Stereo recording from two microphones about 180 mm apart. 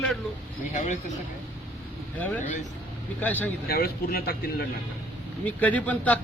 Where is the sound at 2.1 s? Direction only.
10° left (ahead or behind).